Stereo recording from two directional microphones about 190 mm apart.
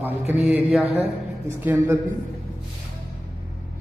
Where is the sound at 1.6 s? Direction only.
10° right (ahead or behind).